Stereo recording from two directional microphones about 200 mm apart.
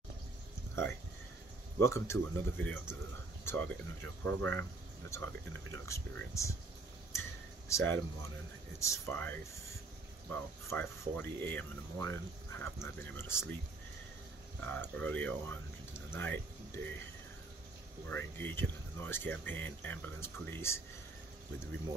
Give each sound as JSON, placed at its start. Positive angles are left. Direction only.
{"t": 1.8, "sound": "speech", "side_deg": 15}
{"t": 7.1, "sound": "a sound", "side_deg": 15}
{"t": 8.7, "sound": "speech", "side_deg": 15}
{"t": 14.6, "sound": "speech", "side_deg": 10}
{"t": 18.0, "sound": "speech", "side_deg": 10}